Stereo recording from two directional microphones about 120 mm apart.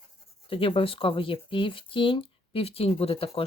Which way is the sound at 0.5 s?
45° left (ahead or behind).